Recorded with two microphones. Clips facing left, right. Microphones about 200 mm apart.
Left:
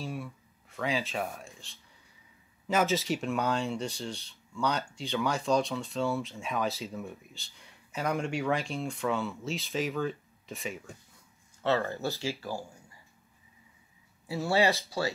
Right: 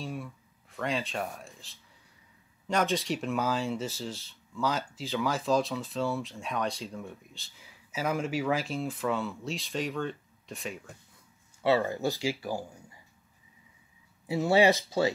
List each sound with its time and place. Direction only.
0.0 s speech: centre (ahead or behind)
11.6 s speech: 15° right (ahead or behind)
14.2 s speech: 20° right (ahead or behind)